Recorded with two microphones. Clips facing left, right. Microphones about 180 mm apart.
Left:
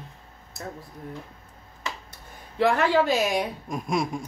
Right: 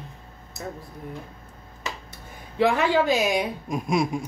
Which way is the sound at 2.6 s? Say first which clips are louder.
Even; centre (ahead or behind).